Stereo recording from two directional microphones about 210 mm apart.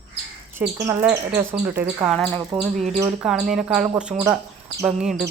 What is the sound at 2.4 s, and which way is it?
Speech, 15° right (ahead or behind).